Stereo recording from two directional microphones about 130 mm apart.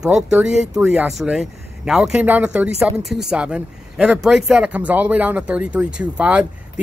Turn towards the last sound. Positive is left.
turn(degrees=-10)  # may be behind; listen again after turning